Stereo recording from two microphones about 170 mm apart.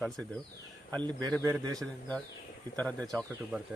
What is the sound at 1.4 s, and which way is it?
Speech, 20° right (ahead or behind).